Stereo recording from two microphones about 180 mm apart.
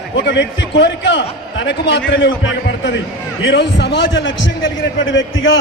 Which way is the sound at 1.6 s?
80° left.